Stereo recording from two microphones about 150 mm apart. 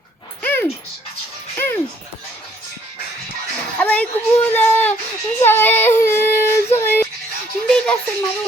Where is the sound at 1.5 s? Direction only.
15° left (ahead or behind).